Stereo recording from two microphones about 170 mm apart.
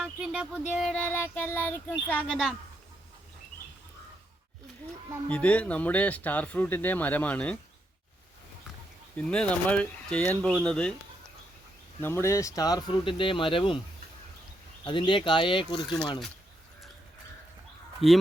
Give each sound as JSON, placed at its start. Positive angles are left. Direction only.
{"t": 0.0, "sound": "child singing", "side_deg": -5}
{"t": 5.3, "sound": "child singing", "side_deg": 10}
{"t": 9.1, "sound": "child singing", "side_deg": 5}
{"t": 10.6, "sound": "speech", "side_deg": 5}
{"t": 12.0, "sound": "speech", "side_deg": 15}
{"t": 14.8, "sound": "speech", "side_deg": 30}
{"t": 18.0, "sound": "speech", "side_deg": 35}